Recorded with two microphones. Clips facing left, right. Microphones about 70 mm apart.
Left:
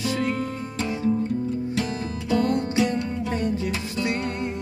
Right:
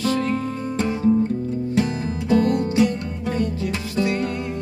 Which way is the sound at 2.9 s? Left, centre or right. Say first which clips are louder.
Even; left.